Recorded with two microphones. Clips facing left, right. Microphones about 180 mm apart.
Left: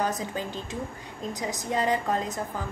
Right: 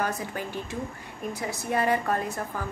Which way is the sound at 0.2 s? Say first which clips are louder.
Left 1 dB; 20° left (ahead or behind).